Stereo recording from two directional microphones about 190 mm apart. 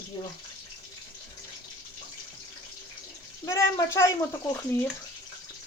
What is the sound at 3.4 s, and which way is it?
A child's voice, 15° left (ahead or behind).